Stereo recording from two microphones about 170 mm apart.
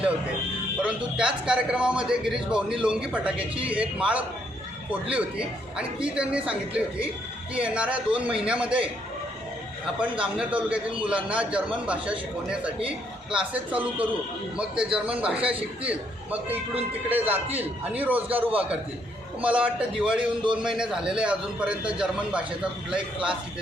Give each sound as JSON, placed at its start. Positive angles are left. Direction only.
{"t": 0.8, "sound": "a man's voice", "side_deg": -5}
{"t": 13.3, "sound": "a man's voice", "side_deg": -10}
{"t": 20.1, "sound": "speech", "side_deg": -30}
{"t": 20.7, "sound": "a man's voice", "side_deg": -5}